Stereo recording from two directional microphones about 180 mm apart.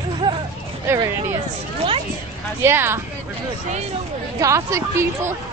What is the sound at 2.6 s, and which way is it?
Speech, 15° right (ahead or behind).